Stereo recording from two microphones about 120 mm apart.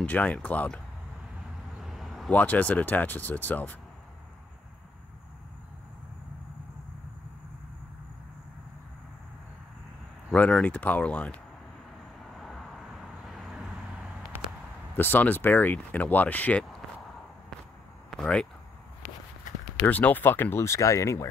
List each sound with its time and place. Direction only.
0.0 s speech: 15° left (ahead or behind)
1.8 s a sound: centre (ahead or behind)
2.3 s speech: 15° left (ahead or behind)
10.3 s speech: 10° left (ahead or behind)
12.2 s vehicle: centre (ahead or behind)
14.3 s a sound: 20° right (ahead or behind)
15.0 s speech: 15° left (ahead or behind)
18.2 s speech: 5° left (ahead or behind)
19.8 s speech: 15° left (ahead or behind)